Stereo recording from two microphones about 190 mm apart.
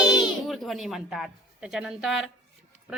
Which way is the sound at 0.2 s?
Centre (ahead or behind).